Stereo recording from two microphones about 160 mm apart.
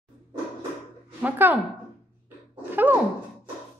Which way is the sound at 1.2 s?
10° right (ahead or behind).